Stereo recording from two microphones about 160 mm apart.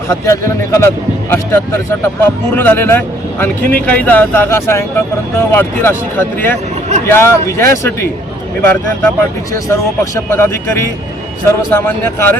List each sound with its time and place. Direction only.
0.1 s speech: 20° left (ahead or behind)